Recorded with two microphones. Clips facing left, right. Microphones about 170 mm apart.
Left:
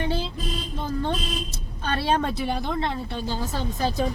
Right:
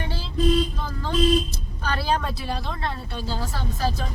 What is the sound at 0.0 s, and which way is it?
Vehicle, 20° left (ahead or behind).